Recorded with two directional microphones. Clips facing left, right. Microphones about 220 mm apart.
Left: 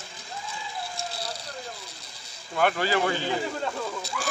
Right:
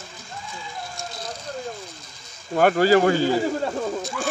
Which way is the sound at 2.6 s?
45° right (ahead or behind).